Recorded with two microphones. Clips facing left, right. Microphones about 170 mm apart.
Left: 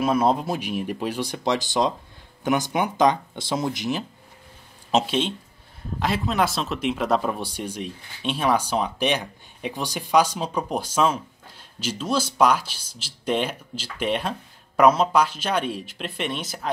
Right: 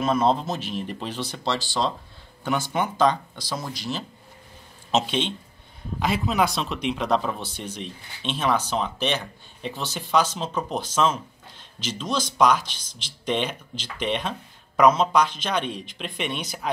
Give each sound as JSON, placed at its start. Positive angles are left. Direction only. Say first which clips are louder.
{"t": 0.0, "sound": "speech", "louder": "left 1 dB", "side_deg": 10}
{"t": 4.9, "sound": "speech", "louder": "left 2 dB", "side_deg": 5}